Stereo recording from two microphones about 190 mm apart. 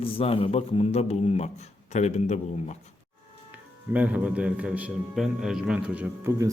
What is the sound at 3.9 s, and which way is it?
A man's voice, 5° right (ahead or behind).